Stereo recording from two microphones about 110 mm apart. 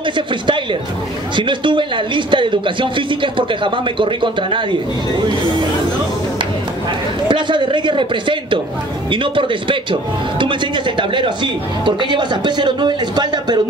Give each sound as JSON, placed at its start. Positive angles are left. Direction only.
{"t": 1.3, "sound": "speech", "side_deg": -45}
{"t": 7.2, "sound": "speech", "side_deg": -45}
{"t": 11.0, "sound": "speech", "side_deg": -45}